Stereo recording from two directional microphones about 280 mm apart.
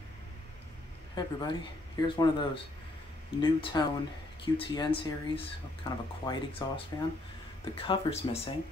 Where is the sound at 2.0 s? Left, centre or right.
Centre.